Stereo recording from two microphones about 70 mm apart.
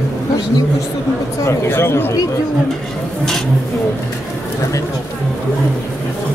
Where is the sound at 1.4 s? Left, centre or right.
Left.